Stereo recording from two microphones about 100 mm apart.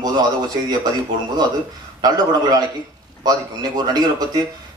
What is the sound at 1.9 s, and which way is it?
A man's voice, 40° right (ahead or behind).